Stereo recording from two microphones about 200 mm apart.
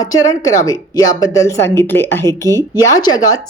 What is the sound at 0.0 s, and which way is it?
A woman's voice, 20° left (ahead or behind).